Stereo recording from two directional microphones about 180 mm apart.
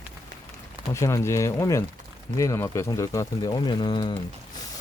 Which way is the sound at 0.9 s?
15° left (ahead or behind).